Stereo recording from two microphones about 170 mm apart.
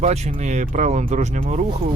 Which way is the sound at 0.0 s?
40° right (ahead or behind).